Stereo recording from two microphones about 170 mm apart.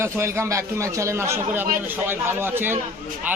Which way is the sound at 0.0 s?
15° right (ahead or behind).